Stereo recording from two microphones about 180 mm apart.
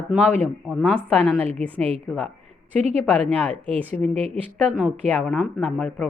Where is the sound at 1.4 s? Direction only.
35° right (ahead or behind).